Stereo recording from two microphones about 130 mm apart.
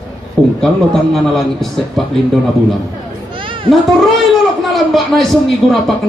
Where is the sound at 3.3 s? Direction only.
40° right (ahead or behind).